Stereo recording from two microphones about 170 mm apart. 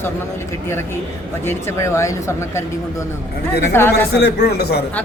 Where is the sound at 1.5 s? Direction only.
15° left (ahead or behind).